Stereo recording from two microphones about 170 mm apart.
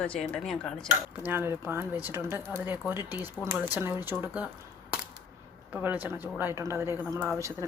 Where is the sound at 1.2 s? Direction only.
10° right (ahead or behind).